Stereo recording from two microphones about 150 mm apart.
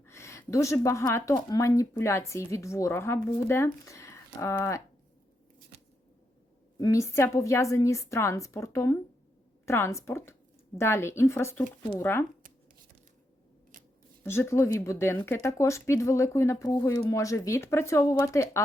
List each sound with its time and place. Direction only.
0.0 s speech: 20° left (ahead or behind)
6.7 s a woman's voice: 20° left (ahead or behind)
14.3 s speech: 15° left (ahead or behind)